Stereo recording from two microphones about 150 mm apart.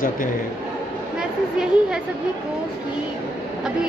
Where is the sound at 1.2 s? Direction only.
5° right (ahead or behind).